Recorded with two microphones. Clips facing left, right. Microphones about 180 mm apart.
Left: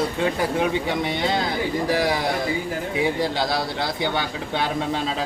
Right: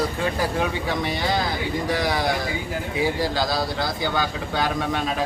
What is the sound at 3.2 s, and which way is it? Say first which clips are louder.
Speech: even; 25° left (ahead or behind).